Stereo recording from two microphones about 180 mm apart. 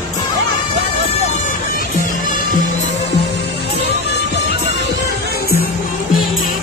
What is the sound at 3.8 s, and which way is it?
Music, 70° left (ahead or behind).